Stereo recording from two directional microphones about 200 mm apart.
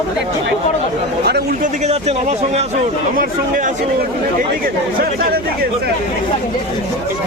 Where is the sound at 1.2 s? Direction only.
55° right (ahead or behind).